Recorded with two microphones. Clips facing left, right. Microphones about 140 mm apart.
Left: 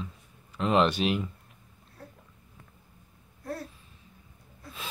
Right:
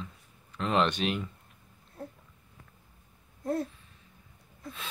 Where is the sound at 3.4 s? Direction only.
20° right (ahead or behind).